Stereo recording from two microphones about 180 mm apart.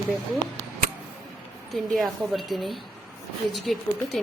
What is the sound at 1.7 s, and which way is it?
A woman's voice, centre (ahead or behind).